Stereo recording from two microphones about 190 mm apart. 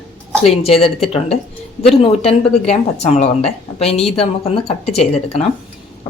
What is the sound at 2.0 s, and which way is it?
A woman's voice, 30° left (ahead or behind).